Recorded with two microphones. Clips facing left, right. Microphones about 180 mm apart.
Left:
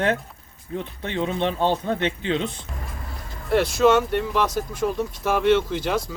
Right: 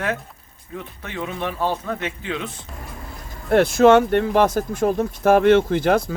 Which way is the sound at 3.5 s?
50° right (ahead or behind).